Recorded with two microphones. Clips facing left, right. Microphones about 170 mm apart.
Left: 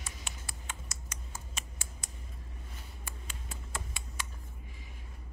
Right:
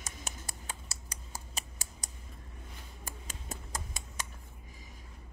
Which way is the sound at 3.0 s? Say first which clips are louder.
Right 3 dB; 45° right (ahead or behind).